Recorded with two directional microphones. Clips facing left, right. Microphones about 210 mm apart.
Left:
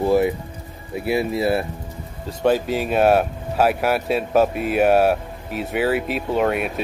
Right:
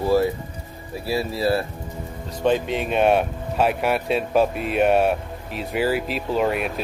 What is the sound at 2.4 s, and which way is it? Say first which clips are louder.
Speech: left 2 dB; 5° left (ahead or behind).